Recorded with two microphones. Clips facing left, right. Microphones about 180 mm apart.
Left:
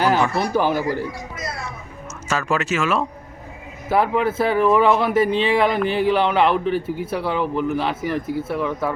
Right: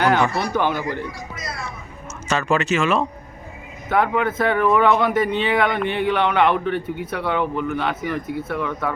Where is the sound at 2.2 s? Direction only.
5° left (ahead or behind).